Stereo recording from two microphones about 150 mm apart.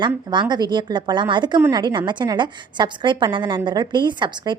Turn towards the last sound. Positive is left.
turn(degrees=-30)  # may be behind; listen again after turning